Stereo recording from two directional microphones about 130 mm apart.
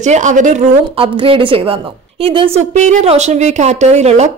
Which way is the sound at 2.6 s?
60° right (ahead or behind).